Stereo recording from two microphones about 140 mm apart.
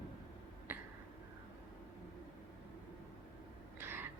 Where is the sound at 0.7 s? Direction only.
15° right (ahead or behind).